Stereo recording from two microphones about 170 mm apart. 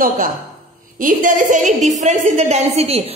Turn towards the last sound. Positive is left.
turn(degrees=-40)  # may be behind; listen again after turning